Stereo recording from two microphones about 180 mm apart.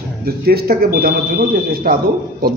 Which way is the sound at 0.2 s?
55° right (ahead or behind).